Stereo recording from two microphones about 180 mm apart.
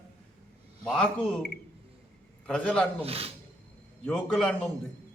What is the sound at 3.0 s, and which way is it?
Speech, 35° right (ahead or behind).